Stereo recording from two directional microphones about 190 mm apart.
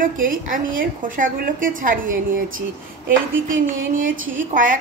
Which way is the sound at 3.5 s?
45° right (ahead or behind).